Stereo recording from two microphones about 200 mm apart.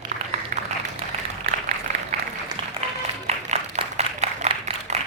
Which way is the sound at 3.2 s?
30° right (ahead or behind).